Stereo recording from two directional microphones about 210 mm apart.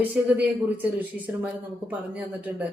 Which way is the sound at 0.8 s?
10° right (ahead or behind).